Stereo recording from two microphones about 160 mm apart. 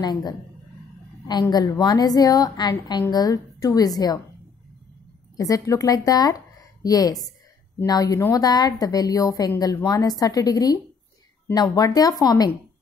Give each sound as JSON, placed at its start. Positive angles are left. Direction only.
{"t": 0.0, "sound": "a woman's voice", "side_deg": 25}
{"t": 5.4, "sound": "a woman's voice", "side_deg": 20}